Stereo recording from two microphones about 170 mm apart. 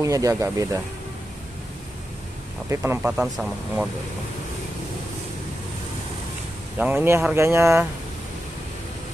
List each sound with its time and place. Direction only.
0.0 s speech: 20° right (ahead or behind)
2.7 s speech: 15° right (ahead or behind)
6.8 s speech: 10° right (ahead or behind)